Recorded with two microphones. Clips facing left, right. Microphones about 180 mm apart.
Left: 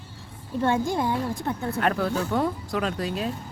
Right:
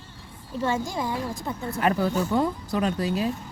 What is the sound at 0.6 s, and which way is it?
A woman's voice, 55° left (ahead or behind).